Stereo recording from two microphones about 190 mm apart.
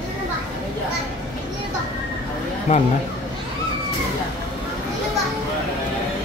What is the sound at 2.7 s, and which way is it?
Speech, 35° left (ahead or behind).